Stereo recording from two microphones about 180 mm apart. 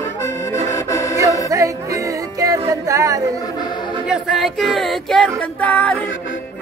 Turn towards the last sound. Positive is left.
turn(degrees=5)  # may be behind; listen again after turning